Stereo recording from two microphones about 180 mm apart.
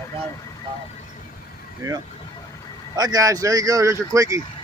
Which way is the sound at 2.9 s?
20° right (ahead or behind).